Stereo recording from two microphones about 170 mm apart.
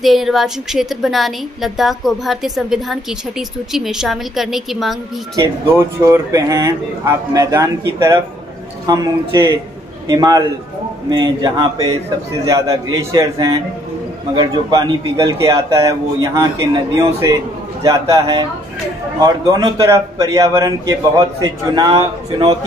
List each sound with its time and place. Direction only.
0.0 s a woman's voice: centre (ahead or behind)
5.3 s a man's voice: 15° right (ahead or behind)